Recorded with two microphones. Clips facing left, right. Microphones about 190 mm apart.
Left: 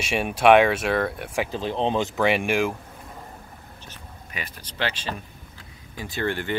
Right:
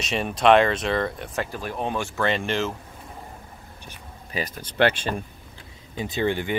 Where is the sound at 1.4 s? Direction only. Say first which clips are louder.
Left 4 dB; 20° left (ahead or behind).